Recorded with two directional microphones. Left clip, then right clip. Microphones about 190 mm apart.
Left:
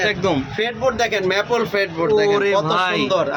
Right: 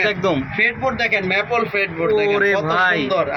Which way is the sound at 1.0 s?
50° left (ahead or behind).